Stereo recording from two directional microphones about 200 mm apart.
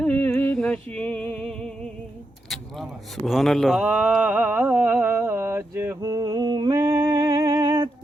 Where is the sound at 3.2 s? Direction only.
Centre (ahead or behind).